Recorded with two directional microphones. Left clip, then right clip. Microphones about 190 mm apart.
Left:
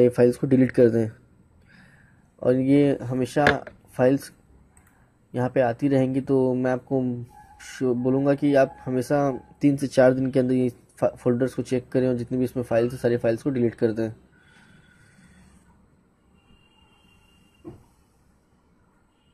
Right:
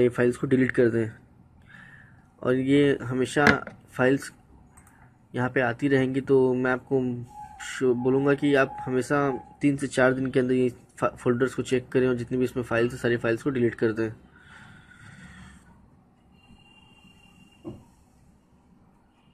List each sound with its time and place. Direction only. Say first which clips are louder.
0.0 s speech: left 5 dB; 40° left (ahead or behind)
2.4 s speech: left 2 dB; 35° left (ahead or behind)
5.3 s speech: left 3 dB; 35° left (ahead or behind)
14.6 s a sound: right 6 dB; 35° left (ahead or behind)